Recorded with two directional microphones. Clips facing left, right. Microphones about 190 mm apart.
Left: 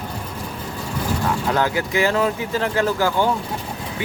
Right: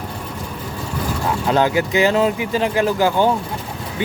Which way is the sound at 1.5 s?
20° right (ahead or behind).